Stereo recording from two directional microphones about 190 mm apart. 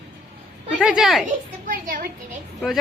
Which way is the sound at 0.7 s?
5° right (ahead or behind).